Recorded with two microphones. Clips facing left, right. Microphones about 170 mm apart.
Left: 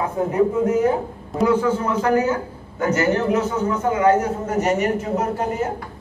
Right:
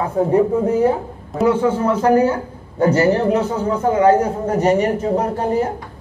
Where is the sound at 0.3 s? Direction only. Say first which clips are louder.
Right 2 dB; 30° right (ahead or behind).